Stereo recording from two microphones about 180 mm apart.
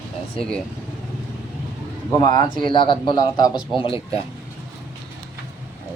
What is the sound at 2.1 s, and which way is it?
A man's voice, 25° left (ahead or behind).